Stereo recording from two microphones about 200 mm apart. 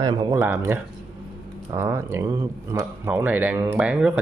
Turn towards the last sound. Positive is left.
turn(degrees=-5)  # may be behind; listen again after turning